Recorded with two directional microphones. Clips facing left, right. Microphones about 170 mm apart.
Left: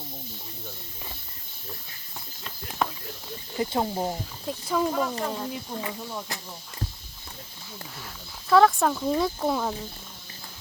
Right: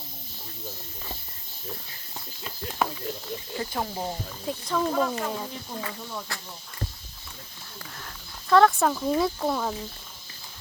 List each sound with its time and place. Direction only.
2.8 s a sound: 5° right (ahead or behind)
3.6 s speech: 20° left (ahead or behind)
4.4 s speech: 5° left (ahead or behind)
5.8 s speech: 20° left (ahead or behind)
7.9 s speech: 5° left (ahead or behind)